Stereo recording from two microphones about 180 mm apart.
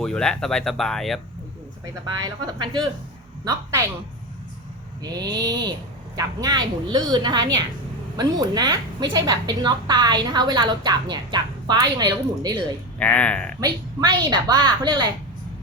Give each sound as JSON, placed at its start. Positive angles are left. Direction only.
{"t": 0.0, "sound": "speech", "side_deg": 5}
{"t": 2.2, "sound": "a woman's voice", "side_deg": -25}
{"t": 5.0, "sound": "a woman's voice", "side_deg": -20}
{"t": 13.0, "sound": "speech", "side_deg": 10}
{"t": 13.6, "sound": "a woman's voice", "side_deg": -25}